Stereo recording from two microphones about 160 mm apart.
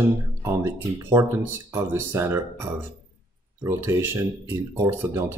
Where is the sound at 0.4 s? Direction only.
15° right (ahead or behind).